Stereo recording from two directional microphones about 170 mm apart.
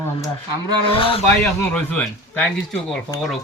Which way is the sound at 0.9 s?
30° left (ahead or behind).